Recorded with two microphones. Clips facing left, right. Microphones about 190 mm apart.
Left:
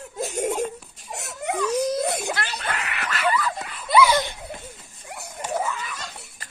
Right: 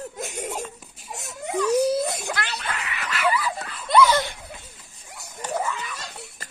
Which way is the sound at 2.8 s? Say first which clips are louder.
Left 2 dB; 75° left (ahead or behind).